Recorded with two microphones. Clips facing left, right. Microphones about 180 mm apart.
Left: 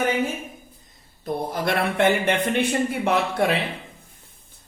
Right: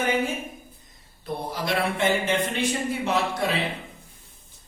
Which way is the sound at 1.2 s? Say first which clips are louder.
Left 5 dB; 55° left (ahead or behind).